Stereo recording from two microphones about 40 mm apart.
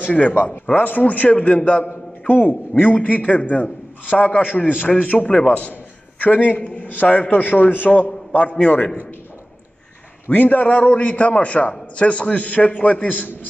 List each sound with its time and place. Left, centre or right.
0.0 s a man's voice: left
1.9 s a sound: left
2.8 s a man's voice: left
5.3 s a man's voice: left
5.6 s a man's voice: left
10.3 s a man's voice: left